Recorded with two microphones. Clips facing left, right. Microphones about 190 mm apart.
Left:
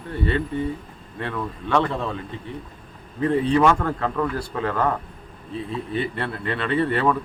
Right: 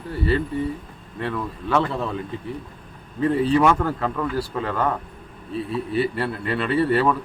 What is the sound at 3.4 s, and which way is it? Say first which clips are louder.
Speech: right 1 dB; 5° right (ahead or behind).